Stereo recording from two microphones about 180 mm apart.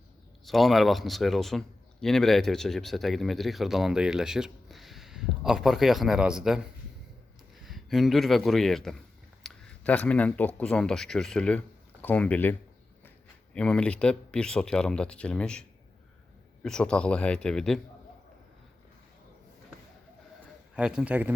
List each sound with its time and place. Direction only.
0.4 s a man's voice: centre (ahead or behind)
7.6 s a man's voice: centre (ahead or behind)
16.6 s a man's voice: 5° left (ahead or behind)
20.7 s a man's voice: 5° right (ahead or behind)